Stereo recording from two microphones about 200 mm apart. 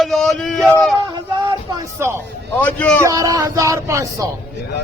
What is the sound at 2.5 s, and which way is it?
Speech, 10° left (ahead or behind).